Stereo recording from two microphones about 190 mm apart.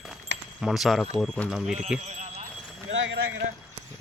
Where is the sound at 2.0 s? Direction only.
40° right (ahead or behind).